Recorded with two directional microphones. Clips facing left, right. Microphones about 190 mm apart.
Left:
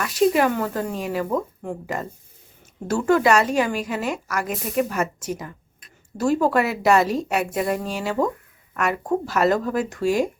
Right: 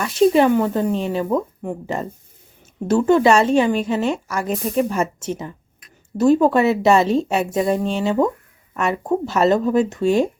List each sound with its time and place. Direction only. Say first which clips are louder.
0.0 s a woman's voice: right 4 dB; 25° right (ahead or behind)